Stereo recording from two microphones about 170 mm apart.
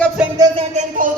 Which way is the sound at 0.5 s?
45° right (ahead or behind).